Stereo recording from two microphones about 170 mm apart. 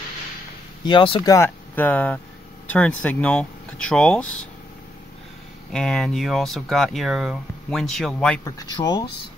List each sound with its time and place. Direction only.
0.8 s speech: 30° left (ahead or behind)
1.3 s speech: 10° left (ahead or behind)
5.7 s speech: centre (ahead or behind)
8.5 s speech: 20° left (ahead or behind)